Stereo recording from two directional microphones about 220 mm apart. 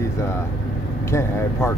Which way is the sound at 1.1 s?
10° left (ahead or behind).